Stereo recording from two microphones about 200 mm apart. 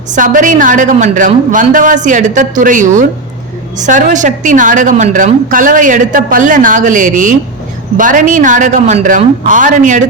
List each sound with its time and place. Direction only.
0.1 s a woman's voice: 40° right (ahead or behind)